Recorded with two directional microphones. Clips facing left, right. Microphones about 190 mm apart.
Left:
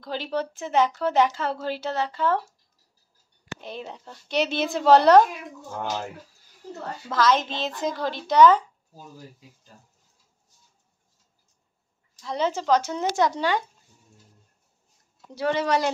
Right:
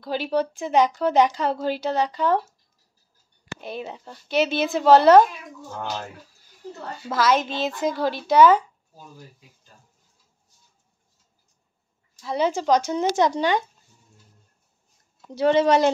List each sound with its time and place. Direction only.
0.0 s speech: 10° right (ahead or behind)
3.6 s a woman's voice: 10° right (ahead or behind)
7.1 s speech: 10° right (ahead or behind)
12.2 s speech: 10° right (ahead or behind)
15.3 s a woman's voice: 25° right (ahead or behind)